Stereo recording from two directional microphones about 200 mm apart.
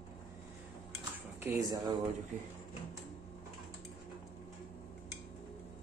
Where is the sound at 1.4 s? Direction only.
15° right (ahead or behind).